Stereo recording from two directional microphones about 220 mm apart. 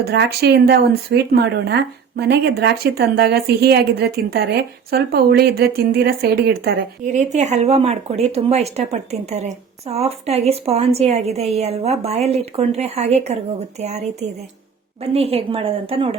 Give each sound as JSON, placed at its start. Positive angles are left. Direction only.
{"t": 0.0, "sound": "speech", "side_deg": -50}
{"t": 7.0, "sound": "speech", "side_deg": -30}